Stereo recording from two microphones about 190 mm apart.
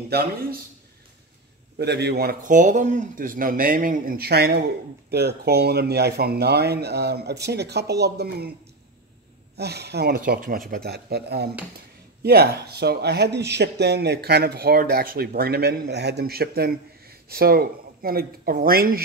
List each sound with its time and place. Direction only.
0.1 s speech: 55° right (ahead or behind)
1.8 s speech: 60° right (ahead or behind)
9.6 s speech: 60° right (ahead or behind)